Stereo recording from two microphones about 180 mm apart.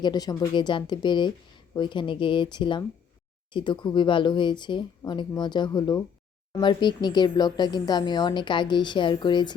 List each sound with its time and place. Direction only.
0.0 s a woman's voice: 25° left (ahead or behind)